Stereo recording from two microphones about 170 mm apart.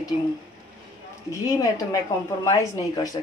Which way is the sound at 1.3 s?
20° left (ahead or behind).